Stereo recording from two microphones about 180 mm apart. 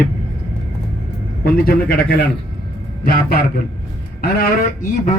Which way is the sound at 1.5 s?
55° left (ahead or behind).